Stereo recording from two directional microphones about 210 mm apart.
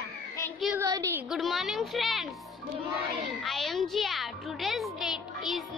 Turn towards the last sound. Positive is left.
turn(degrees=0)  # may be behind; listen again after turning